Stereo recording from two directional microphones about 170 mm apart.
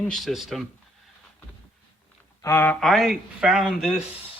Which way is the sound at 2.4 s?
15° left (ahead or behind).